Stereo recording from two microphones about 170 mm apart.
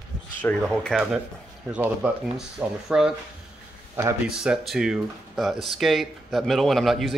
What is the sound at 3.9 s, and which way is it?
Speech, 20° right (ahead or behind).